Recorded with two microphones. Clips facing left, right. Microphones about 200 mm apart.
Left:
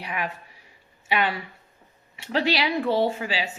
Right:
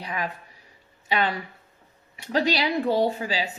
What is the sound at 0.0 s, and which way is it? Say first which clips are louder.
Speech: even; 35° right (ahead or behind).